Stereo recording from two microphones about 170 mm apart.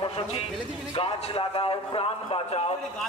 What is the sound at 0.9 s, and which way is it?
A man's voice, 35° left (ahead or behind).